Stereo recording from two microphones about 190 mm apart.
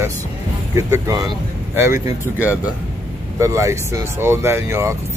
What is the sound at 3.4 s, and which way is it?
Speech, 15° right (ahead or behind).